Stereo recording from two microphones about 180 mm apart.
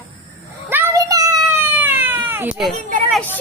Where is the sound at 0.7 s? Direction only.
15° right (ahead or behind).